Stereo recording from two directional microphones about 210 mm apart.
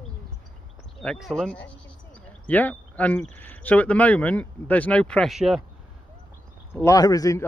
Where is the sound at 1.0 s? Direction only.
Centre (ahead or behind).